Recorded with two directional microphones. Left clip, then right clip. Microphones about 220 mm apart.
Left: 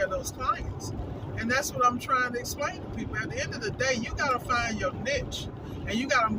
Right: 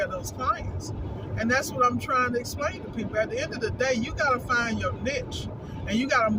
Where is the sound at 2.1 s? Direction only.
55° left (ahead or behind).